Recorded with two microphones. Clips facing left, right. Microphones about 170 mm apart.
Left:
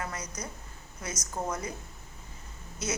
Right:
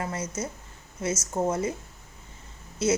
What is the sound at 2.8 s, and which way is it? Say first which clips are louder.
Speech: right 10 dB; 30° right (ahead or behind).